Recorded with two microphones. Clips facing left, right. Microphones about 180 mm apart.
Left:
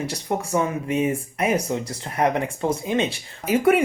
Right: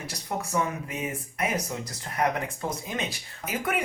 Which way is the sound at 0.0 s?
30° left (ahead or behind).